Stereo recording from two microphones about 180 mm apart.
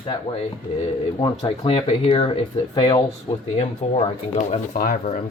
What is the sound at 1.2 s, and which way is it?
Speech, 30° left (ahead or behind).